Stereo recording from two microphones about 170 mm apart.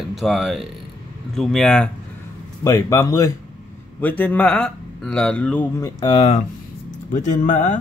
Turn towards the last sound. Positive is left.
turn(degrees=45)  # may be behind; listen again after turning